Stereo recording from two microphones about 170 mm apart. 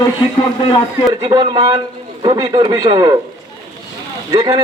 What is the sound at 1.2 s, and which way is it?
A man's voice, 25° right (ahead or behind).